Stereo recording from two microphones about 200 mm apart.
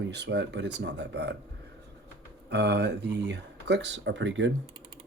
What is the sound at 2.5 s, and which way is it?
Speech, 55° right (ahead or behind).